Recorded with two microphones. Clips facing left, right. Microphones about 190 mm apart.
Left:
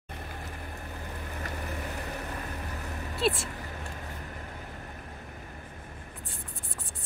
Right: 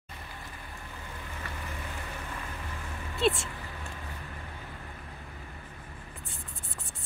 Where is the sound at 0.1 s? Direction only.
55° left (ahead or behind).